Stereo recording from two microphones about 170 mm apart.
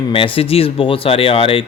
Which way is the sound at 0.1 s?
30° left (ahead or behind).